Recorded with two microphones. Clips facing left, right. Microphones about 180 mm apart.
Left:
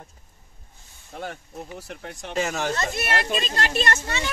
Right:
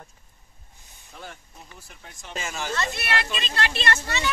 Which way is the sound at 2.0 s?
60° left (ahead or behind).